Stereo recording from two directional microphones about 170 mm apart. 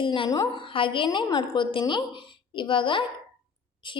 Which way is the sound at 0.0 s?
30° left (ahead or behind).